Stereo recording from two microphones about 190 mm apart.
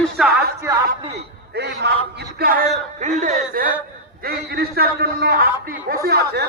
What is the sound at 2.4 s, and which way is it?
Speech, 55° right (ahead or behind).